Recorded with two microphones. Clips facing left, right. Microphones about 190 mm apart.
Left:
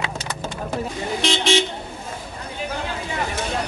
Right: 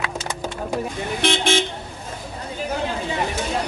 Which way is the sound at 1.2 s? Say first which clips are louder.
Even; 55° right (ahead or behind).